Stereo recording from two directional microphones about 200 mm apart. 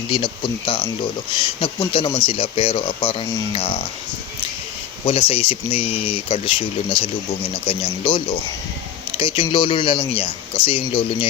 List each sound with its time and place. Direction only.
0.1 s speech: 25° left (ahead or behind)
5.0 s speech: 30° left (ahead or behind)